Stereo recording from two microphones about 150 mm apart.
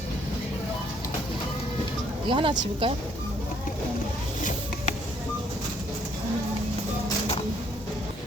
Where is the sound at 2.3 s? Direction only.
35° right (ahead or behind).